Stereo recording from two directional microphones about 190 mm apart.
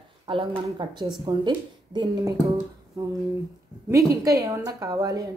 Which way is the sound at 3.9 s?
15° right (ahead or behind).